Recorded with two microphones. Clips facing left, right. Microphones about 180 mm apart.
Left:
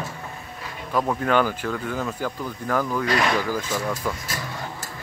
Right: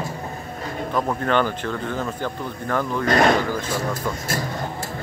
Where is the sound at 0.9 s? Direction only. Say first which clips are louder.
Even; 5° left (ahead or behind).